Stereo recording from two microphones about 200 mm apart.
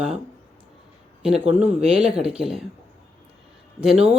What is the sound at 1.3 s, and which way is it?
Speech, 35° right (ahead or behind).